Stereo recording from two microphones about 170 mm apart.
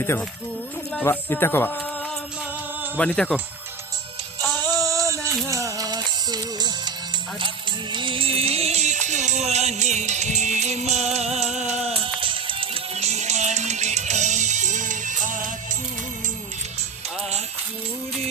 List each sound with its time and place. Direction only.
0.0 s speech: 15° left (ahead or behind)
3.0 s speech: 5° left (ahead or behind)
4.7 s a sound: 20° right (ahead or behind)
5.5 s music: 20° right (ahead or behind)
7.9 s music: 30° right (ahead or behind); by 15.4 s 50° right (ahead or behind)